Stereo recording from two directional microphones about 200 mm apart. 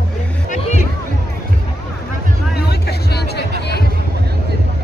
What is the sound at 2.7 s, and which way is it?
Vehicle, 55° left (ahead or behind).